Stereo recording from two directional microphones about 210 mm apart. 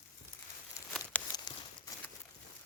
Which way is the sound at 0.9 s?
5° left (ahead or behind).